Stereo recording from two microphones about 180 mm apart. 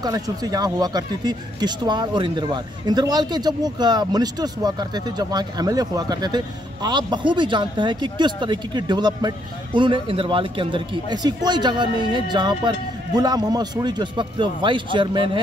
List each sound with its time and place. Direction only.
0.0 s speech: 20° right (ahead or behind)